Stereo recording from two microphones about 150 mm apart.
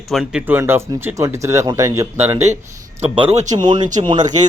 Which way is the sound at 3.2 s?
50° right (ahead or behind).